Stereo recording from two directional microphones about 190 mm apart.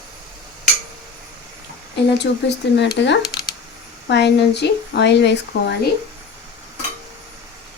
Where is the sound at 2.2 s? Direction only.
65° left (ahead or behind).